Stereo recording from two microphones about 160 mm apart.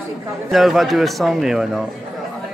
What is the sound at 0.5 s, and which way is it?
A man's voice, centre (ahead or behind).